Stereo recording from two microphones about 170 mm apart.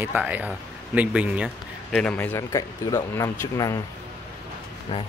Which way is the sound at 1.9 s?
5° left (ahead or behind).